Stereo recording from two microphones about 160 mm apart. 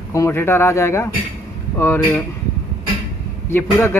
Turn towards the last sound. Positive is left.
turn(degrees=15)  # may be behind; listen again after turning